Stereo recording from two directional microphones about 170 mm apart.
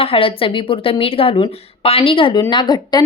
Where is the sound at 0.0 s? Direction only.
35° left (ahead or behind).